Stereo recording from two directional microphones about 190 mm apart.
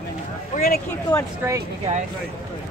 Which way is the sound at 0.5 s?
45° left (ahead or behind).